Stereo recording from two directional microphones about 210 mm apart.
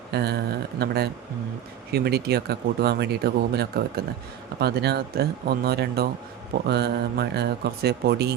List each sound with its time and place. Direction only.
0.1 s speech: 50° right (ahead or behind)